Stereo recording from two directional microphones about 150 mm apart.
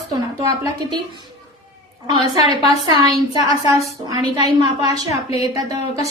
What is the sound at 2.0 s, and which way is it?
A woman's voice, 30° right (ahead or behind).